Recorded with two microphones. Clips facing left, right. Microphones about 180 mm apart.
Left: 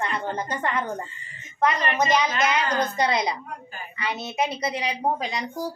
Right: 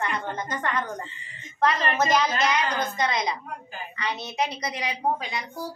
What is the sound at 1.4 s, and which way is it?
Speech, 20° left (ahead or behind).